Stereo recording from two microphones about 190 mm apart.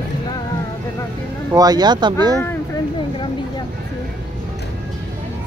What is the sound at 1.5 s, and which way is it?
Speech, 20° right (ahead or behind).